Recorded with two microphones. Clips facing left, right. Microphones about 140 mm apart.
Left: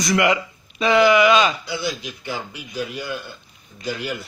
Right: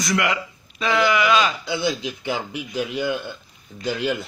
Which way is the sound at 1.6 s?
25° right (ahead or behind).